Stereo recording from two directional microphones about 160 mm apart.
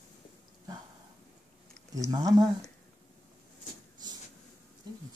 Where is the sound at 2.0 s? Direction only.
25° right (ahead or behind).